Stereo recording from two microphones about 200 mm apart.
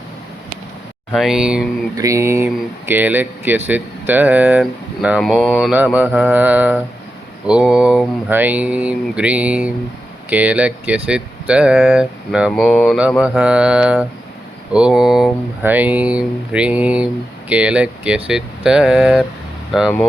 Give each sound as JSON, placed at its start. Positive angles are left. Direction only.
{"t": 1.1, "sound": "speech", "side_deg": 0}
{"t": 2.0, "sound": "speech", "side_deg": -15}